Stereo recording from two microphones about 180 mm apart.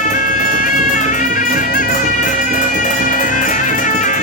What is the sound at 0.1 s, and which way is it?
Music, 45° left (ahead or behind).